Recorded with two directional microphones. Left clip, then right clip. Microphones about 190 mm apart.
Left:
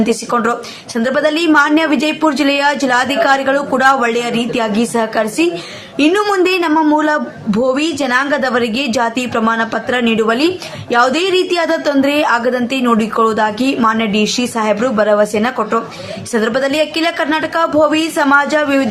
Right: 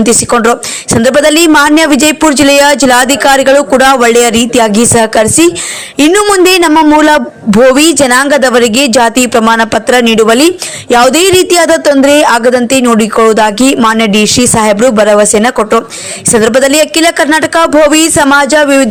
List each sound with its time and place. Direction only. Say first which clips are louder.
0.0 s speech: right 8 dB; 40° right (ahead or behind)